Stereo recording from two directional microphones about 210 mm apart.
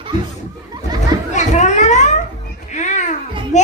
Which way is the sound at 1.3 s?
35° left (ahead or behind).